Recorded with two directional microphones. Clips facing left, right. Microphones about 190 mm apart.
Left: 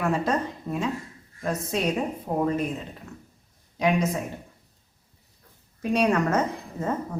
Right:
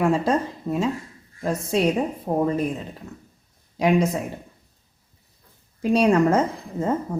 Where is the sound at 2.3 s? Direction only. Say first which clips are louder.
Right 4 dB; 40° right (ahead or behind).